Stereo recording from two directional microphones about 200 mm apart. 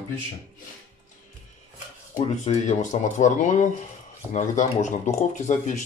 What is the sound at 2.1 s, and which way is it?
Speech, 35° left (ahead or behind).